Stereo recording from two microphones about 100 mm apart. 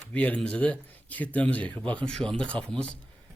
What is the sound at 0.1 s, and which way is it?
A man's voice, 15° left (ahead or behind).